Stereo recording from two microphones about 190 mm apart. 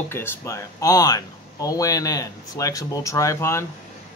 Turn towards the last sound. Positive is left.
turn(degrees=15)  # may be behind; listen again after turning